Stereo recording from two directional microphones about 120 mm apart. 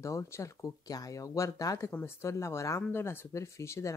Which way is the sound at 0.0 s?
25° left (ahead or behind).